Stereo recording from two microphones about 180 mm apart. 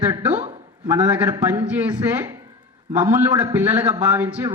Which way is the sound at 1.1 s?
15° right (ahead or behind).